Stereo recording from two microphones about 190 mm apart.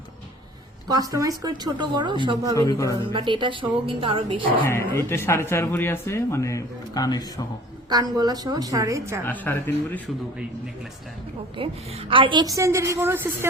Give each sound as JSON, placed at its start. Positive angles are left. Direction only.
{"t": 0.9, "sound": "speech", "side_deg": -20}
{"t": 2.6, "sound": "speech", "side_deg": 15}
{"t": 3.1, "sound": "speech", "side_deg": -25}
{"t": 4.7, "sound": "speech", "side_deg": 15}
{"t": 7.9, "sound": "speech", "side_deg": -20}
{"t": 9.2, "sound": "speech", "side_deg": 10}
{"t": 11.5, "sound": "a woman's voice", "side_deg": -25}